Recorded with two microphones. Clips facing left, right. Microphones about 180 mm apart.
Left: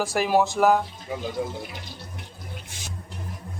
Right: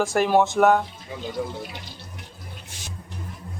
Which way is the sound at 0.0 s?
Centre (ahead or behind).